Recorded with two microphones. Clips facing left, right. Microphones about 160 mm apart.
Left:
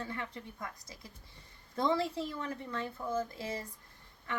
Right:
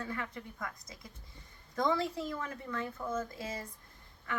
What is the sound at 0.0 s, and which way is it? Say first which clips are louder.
Speech: right 1 dB; 25° left (ahead or behind).